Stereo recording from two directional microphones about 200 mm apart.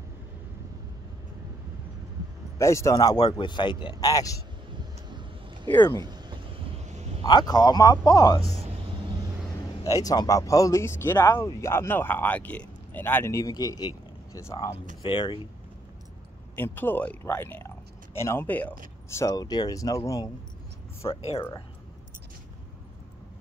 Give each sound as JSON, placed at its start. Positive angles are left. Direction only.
{"t": 2.6, "sound": "speech", "side_deg": 15}
{"t": 5.9, "sound": "speech", "side_deg": -20}
{"t": 7.2, "sound": "a man's voice", "side_deg": 20}
{"t": 9.8, "sound": "a man's voice", "side_deg": 15}
{"t": 16.5, "sound": "a man's voice", "side_deg": 10}